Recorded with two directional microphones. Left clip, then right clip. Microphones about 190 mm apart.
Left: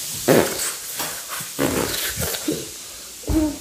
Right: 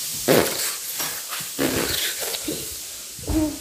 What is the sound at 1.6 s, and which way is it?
Dog, centre (ahead or behind).